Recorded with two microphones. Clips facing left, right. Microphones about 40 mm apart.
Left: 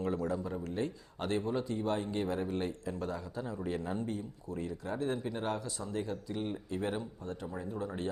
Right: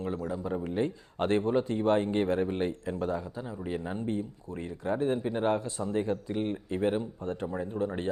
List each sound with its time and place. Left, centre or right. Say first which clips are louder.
0.4 s speech: right 6 dB; right
3.3 s speech: right 1 dB; centre
4.1 s speech: right 5 dB; right